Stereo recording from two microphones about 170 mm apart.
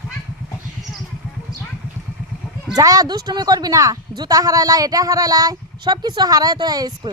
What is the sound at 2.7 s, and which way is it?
Speech, 20° right (ahead or behind).